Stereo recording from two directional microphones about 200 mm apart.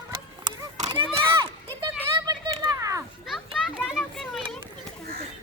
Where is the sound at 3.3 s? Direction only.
Centre (ahead or behind).